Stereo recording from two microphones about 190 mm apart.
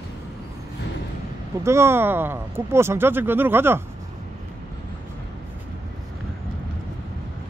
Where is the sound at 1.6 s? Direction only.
15° right (ahead or behind).